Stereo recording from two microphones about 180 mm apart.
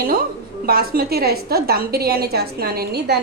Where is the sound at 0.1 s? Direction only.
55° right (ahead or behind).